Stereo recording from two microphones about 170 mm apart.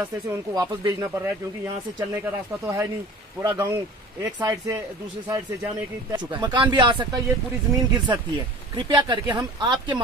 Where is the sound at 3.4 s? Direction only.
15° right (ahead or behind).